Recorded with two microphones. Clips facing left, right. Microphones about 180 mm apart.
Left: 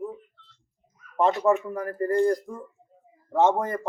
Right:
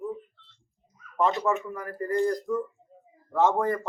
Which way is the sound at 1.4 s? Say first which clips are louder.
Left 5 dB; 35° left (ahead or behind).